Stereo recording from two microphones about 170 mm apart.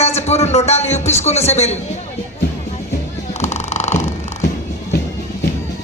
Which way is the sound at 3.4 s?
40° left (ahead or behind).